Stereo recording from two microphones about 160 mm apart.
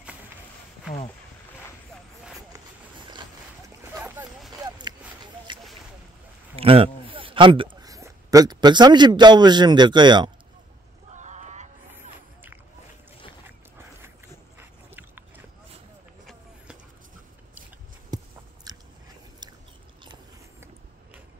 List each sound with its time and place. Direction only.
2.5 s boat: 30° right (ahead or behind)
4.6 s a sound: 25° right (ahead or behind)
6.5 s speech: 35° right (ahead or behind)
11.1 s a sound: 45° right (ahead or behind)
14.6 s biting: 15° right (ahead or behind)
18.1 s biting: 25° right (ahead or behind)